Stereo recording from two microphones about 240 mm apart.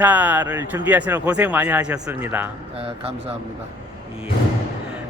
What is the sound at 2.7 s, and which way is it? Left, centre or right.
Speech, right.